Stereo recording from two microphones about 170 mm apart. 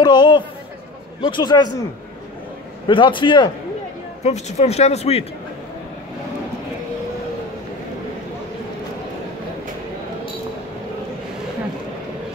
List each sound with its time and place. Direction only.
0.0 s a man's voice: 25° left (ahead or behind)
2.9 s a man's voice: 30° left (ahead or behind)
4.2 s speech: 40° left (ahead or behind)